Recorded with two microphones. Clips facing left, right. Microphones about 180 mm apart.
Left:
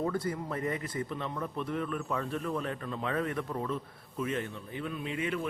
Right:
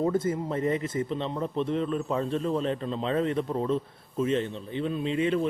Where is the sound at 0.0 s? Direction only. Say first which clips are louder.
Right 6 dB; 20° right (ahead or behind).